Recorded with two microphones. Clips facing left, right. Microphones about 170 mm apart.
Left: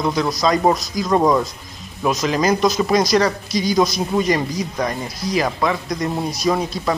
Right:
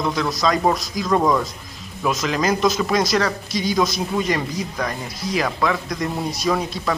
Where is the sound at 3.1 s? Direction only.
20° left (ahead or behind).